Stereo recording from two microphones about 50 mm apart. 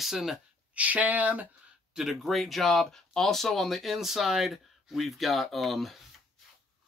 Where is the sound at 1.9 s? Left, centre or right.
Centre.